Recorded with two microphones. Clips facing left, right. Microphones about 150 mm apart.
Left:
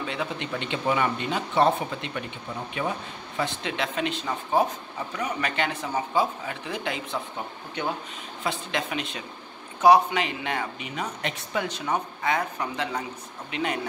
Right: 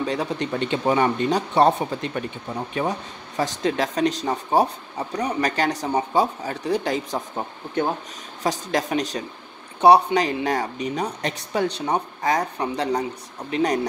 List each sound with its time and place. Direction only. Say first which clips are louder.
0.0 s speech: right 6 dB; 40° right (ahead or behind)